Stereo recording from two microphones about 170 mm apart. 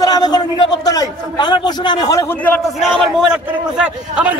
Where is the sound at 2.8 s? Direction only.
Centre (ahead or behind).